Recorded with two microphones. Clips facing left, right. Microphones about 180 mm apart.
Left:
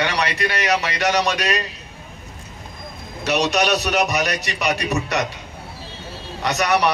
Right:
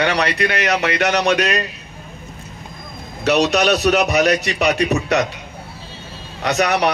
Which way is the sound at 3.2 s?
60° right (ahead or behind).